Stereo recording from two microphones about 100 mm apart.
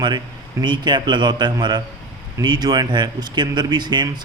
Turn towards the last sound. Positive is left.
turn(degrees=-45)  # may be behind; listen again after turning